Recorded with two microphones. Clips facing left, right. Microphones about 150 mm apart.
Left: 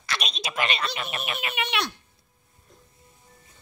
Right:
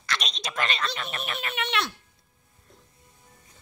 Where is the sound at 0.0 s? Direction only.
10° left (ahead or behind).